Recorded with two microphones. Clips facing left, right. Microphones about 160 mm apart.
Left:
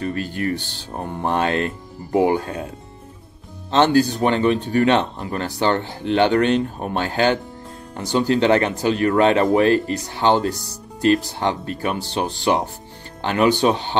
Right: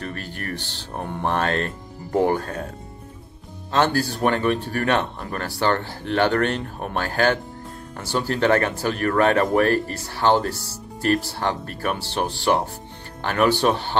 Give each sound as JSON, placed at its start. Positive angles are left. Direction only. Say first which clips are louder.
{"t": 0.0, "sound": "speech", "louder": "left 8 dB", "side_deg": 15}
{"t": 3.7, "sound": "speech", "louder": "left 5 dB", "side_deg": 20}